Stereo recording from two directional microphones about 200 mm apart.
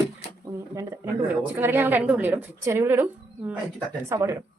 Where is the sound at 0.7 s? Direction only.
15° right (ahead or behind).